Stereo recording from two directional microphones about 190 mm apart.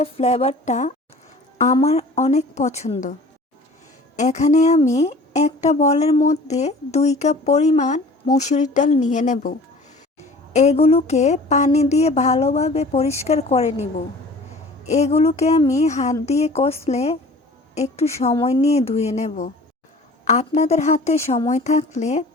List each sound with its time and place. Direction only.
0.0 s a woman's voice: 35° left (ahead or behind)
4.2 s a woman's voice: 40° left (ahead or behind)
14.8 s a woman's voice: 35° left (ahead or behind)